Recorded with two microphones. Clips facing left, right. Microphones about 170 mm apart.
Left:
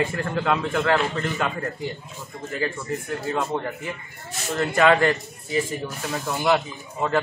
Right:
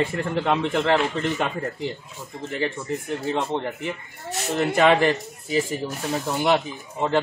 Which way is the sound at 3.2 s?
25° right (ahead or behind).